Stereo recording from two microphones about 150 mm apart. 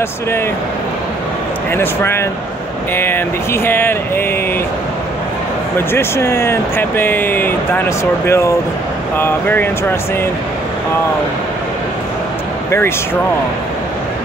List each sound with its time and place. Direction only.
1.7 s speech: 15° left (ahead or behind)
5.9 s speech: 15° left (ahead or behind)